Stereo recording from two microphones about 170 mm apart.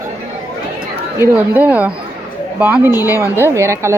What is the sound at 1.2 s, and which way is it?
A woman's voice, 10° right (ahead or behind).